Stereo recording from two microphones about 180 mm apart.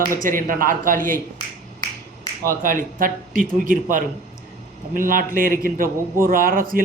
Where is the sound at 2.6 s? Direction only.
50° right (ahead or behind).